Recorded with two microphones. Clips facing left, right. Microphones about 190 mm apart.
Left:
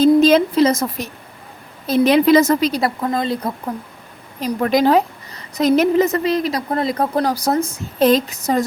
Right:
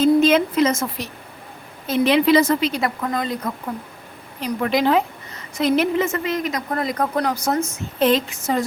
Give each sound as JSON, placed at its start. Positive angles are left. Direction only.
{"t": 0.0, "sound": "a woman's voice", "side_deg": 35}
{"t": 4.4, "sound": "a woman's voice", "side_deg": 40}